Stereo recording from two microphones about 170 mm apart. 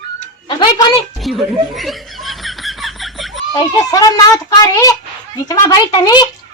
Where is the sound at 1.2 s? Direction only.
Centre (ahead or behind).